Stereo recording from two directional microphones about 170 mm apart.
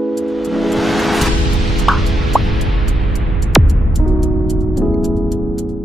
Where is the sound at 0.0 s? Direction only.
Centre (ahead or behind).